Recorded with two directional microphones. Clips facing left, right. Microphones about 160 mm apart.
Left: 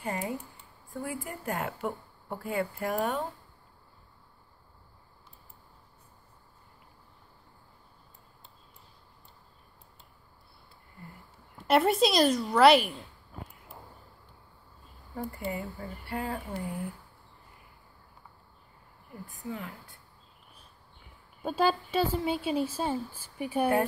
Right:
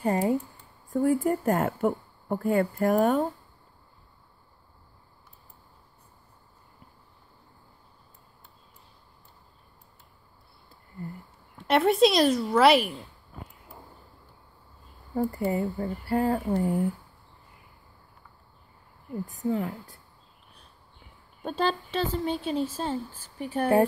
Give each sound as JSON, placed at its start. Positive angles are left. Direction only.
{"t": 0.0, "sound": "a woman's voice", "side_deg": -35}
{"t": 11.5, "sound": "speech", "side_deg": 0}
{"t": 15.1, "sound": "speech", "side_deg": -40}
{"t": 19.2, "sound": "speech", "side_deg": -40}
{"t": 21.4, "sound": "speech", "side_deg": 5}